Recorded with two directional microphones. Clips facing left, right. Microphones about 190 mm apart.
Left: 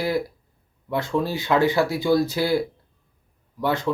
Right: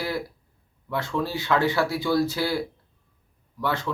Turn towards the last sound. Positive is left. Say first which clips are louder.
# left 4 dB
turn(degrees=15)  # may be behind; listen again after turning